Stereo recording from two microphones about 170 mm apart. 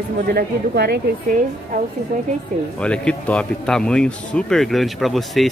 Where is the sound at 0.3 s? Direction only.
65° right (ahead or behind).